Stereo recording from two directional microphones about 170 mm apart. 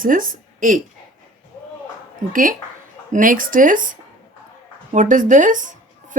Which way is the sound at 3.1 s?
50° right (ahead or behind).